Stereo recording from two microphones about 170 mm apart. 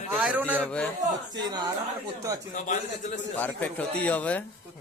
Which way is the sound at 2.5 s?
45° left (ahead or behind).